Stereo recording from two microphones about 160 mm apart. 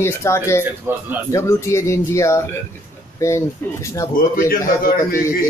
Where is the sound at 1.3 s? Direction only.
20° left (ahead or behind).